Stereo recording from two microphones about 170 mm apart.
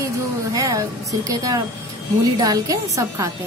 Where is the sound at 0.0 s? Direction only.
20° right (ahead or behind).